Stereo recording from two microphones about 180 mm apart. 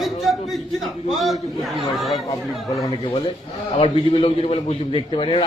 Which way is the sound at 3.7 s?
30° left (ahead or behind).